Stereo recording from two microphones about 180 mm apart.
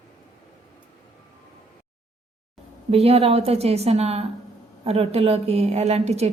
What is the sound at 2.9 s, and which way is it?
A woman's voice, 35° right (ahead or behind).